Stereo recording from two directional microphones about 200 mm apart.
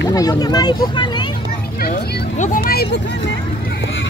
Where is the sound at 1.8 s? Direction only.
40° left (ahead or behind).